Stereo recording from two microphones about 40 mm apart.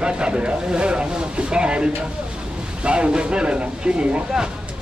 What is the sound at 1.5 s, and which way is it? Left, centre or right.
Speech, right.